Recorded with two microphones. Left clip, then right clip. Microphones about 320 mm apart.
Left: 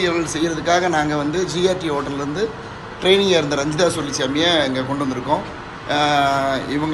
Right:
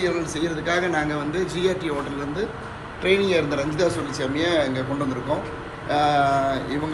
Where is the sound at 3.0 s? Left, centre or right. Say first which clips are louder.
Left 5 dB; centre.